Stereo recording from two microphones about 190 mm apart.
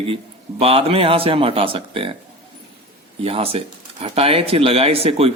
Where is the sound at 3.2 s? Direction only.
30° right (ahead or behind).